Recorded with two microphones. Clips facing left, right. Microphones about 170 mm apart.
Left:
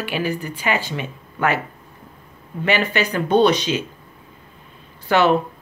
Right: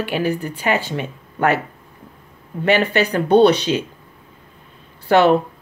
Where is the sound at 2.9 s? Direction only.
60° right (ahead or behind).